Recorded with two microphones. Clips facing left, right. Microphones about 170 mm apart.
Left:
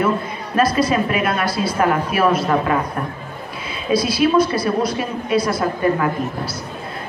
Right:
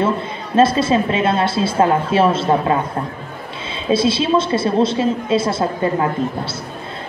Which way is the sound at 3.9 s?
25° right (ahead or behind).